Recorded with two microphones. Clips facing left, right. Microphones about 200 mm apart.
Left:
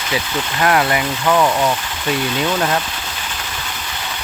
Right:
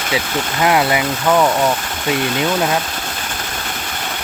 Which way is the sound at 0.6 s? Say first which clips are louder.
Right 1 dB; 20° right (ahead or behind).